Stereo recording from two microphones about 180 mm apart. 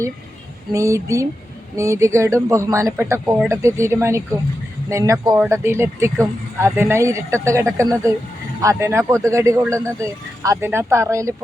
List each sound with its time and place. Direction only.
0.7 s speech: 15° right (ahead or behind)